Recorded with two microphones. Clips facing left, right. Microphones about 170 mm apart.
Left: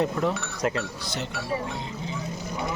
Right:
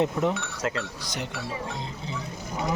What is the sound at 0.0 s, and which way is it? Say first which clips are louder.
Speech: right 1 dB; 20° right (ahead or behind).